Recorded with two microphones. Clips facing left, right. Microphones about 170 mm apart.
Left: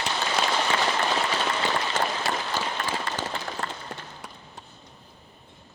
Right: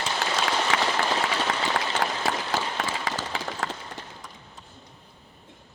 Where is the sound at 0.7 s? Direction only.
90° right.